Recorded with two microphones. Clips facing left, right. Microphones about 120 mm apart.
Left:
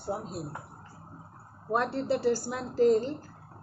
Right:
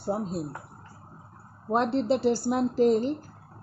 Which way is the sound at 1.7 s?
20° right (ahead or behind).